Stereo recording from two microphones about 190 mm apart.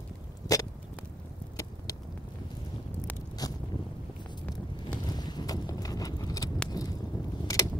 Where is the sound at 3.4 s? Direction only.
20° left (ahead or behind).